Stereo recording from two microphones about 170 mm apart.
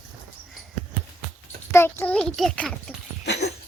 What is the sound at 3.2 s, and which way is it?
Dog, 80° left.